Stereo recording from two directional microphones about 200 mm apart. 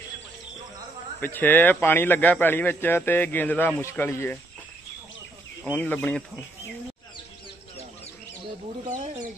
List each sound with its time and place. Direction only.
1.2 s speech: 10° left (ahead or behind)
5.7 s speech: 10° left (ahead or behind)
8.8 s speech: 35° right (ahead or behind)